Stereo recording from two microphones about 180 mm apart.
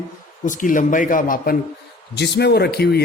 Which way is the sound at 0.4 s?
45° left (ahead or behind).